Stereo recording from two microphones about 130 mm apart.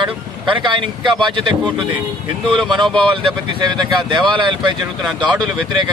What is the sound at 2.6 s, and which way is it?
Speech, 35° right (ahead or behind).